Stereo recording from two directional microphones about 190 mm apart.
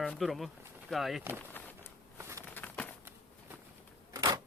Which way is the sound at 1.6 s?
10° left (ahead or behind).